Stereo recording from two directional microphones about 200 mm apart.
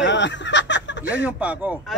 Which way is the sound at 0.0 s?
65° left (ahead or behind).